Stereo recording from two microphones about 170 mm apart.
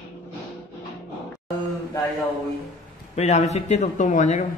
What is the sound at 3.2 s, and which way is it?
Speech, 40° left (ahead or behind).